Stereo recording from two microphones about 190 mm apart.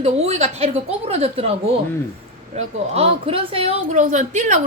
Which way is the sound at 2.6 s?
30° right (ahead or behind).